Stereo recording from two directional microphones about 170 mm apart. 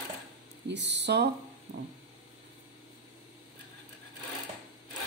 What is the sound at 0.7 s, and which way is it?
Speech, 90° right.